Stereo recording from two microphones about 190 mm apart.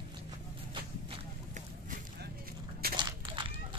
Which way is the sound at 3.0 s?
25° right (ahead or behind).